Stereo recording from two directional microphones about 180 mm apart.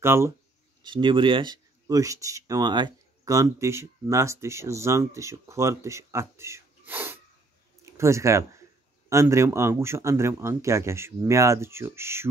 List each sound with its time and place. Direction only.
0.0 s speech: 15° right (ahead or behind)
0.8 s speech: 25° right (ahead or behind)